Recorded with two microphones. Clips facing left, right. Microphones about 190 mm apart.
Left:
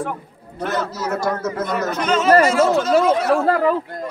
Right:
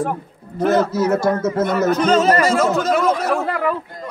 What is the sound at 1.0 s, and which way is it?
A man's voice, 25° right (ahead or behind).